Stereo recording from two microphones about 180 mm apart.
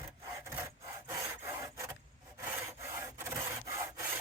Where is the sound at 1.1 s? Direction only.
15° right (ahead or behind).